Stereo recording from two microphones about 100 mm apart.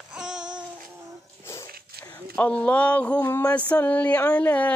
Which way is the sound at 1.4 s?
25° left (ahead or behind).